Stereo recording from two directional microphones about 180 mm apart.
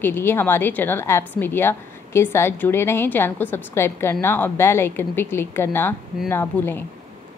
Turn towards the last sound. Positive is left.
turn(degrees=10)  # may be behind; listen again after turning